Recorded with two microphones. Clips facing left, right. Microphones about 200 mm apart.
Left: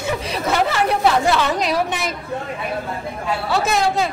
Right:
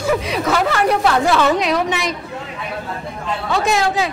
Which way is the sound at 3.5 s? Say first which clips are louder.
Right 2 dB; centre (ahead or behind).